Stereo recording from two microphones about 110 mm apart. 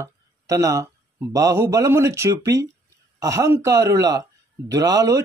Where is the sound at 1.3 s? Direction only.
30° right (ahead or behind).